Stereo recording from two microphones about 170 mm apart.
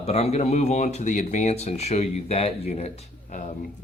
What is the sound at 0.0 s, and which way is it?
Speech, 35° left (ahead or behind).